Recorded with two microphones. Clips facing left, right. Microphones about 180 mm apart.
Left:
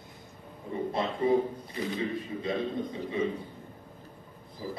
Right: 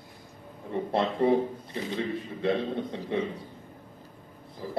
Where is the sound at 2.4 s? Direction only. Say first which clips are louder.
Right 5 dB; 70° right (ahead or behind).